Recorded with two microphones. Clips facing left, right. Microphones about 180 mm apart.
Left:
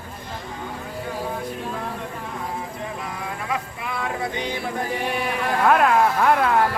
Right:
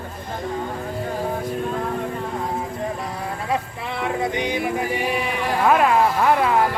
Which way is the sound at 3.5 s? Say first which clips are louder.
Right 3 dB; 25° right (ahead or behind).